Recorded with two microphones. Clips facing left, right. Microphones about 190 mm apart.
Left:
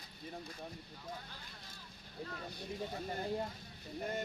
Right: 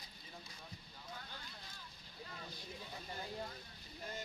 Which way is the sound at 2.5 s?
55° left (ahead or behind).